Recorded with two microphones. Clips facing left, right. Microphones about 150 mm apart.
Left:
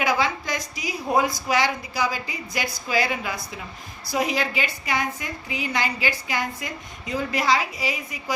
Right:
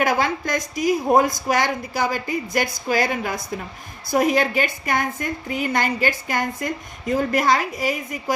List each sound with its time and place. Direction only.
0.0 s a woman's voice: 50° right (ahead or behind)